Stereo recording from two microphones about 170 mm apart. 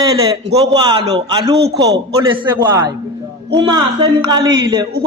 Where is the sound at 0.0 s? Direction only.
25° right (ahead or behind).